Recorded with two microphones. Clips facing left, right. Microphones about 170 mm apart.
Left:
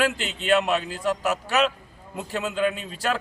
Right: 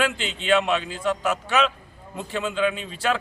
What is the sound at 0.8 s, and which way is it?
Speech, 40° left (ahead or behind).